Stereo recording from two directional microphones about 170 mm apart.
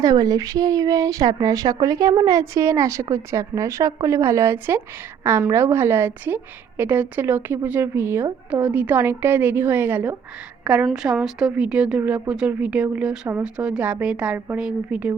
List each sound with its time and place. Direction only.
0.0 s a woman's voice: 20° right (ahead or behind)